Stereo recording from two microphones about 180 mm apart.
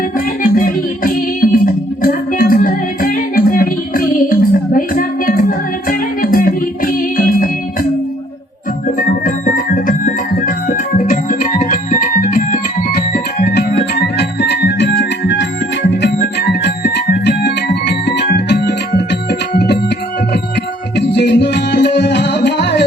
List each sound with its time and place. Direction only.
0.4 s music: 50° left (ahead or behind)
9.8 s organ: 50° left (ahead or behind)
13.1 s music: 60° left (ahead or behind)
16.0 s music: 65° left (ahead or behind)
20.9 s music: 70° left (ahead or behind)